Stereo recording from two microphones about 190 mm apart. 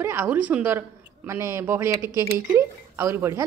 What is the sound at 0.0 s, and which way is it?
Speech, 15° right (ahead or behind).